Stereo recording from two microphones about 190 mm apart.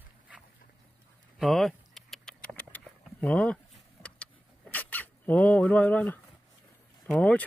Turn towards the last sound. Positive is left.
turn(degrees=5)  # may be behind; listen again after turning